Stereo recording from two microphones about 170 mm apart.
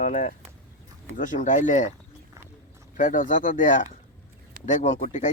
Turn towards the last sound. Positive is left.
turn(degrees=45)  # may be behind; listen again after turning